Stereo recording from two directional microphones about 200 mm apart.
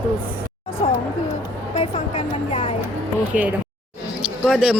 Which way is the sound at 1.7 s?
30° left (ahead or behind).